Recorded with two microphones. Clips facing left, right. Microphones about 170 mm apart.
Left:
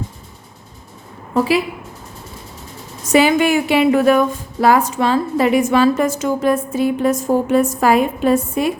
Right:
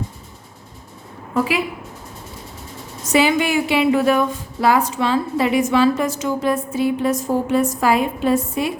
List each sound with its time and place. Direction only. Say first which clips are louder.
1.3 s a woman's voice: left 4 dB; 35° left (ahead or behind)
3.1 s a woman's voice: left 4 dB; 50° left (ahead or behind)